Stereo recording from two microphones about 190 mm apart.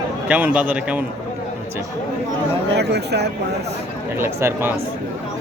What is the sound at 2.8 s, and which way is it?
Speech, 60° right (ahead or behind).